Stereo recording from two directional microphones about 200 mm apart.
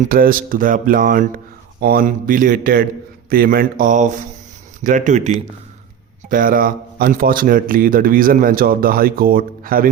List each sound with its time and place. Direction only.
0.0 s speech: 45° right (ahead or behind)
6.3 s speech: 45° right (ahead or behind)